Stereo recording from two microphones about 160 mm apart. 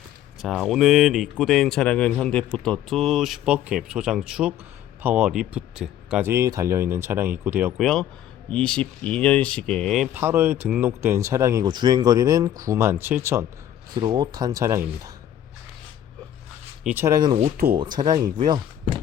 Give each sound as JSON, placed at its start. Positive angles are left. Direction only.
{"t": 0.4, "sound": "speech", "side_deg": 0}
{"t": 6.3, "sound": "speech", "side_deg": -20}
{"t": 7.8, "sound": "speech", "side_deg": 0}
{"t": 10.2, "sound": "speech", "side_deg": -15}
{"t": 13.9, "sound": "speech", "side_deg": -25}
{"t": 16.8, "sound": "speech", "side_deg": -15}